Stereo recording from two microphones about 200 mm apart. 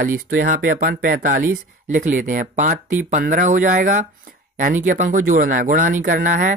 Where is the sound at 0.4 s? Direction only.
45° right (ahead or behind).